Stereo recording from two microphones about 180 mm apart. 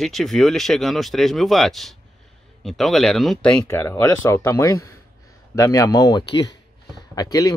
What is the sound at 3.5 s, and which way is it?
Speech, 15° left (ahead or behind).